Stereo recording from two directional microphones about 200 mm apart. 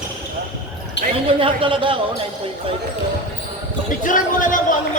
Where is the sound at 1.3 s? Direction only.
25° right (ahead or behind).